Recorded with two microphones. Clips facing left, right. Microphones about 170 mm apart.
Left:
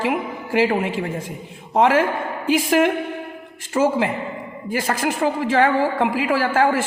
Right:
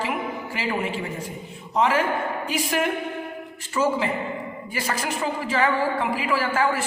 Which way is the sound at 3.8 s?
50° left (ahead or behind).